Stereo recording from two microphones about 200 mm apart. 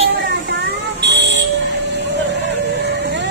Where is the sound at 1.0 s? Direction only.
60° right (ahead or behind).